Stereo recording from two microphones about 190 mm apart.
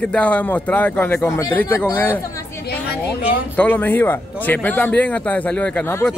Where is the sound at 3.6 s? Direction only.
10° left (ahead or behind).